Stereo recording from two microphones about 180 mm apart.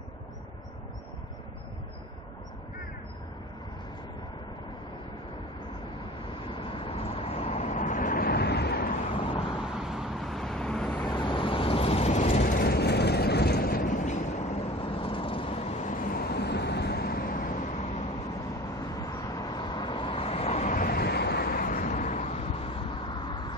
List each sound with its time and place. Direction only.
6.6 s vehicle: 30° left (ahead or behind); by 8.9 s 65° left (ahead or behind)
9.6 s vehicle: centre (ahead or behind)
11.1 s vehicle: 25° left (ahead or behind)
18.8 s vehicle: 20° left (ahead or behind)